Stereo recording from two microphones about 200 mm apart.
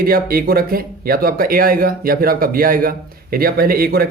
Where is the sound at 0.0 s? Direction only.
45° right (ahead or behind).